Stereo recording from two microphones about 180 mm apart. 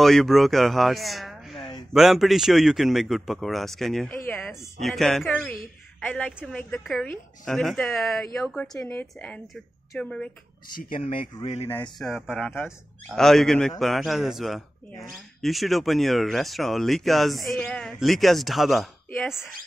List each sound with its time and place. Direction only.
0.0 s a man's voice: centre (ahead or behind)
10.9 s speech: 30° left (ahead or behind)
12.0 s speech: centre (ahead or behind)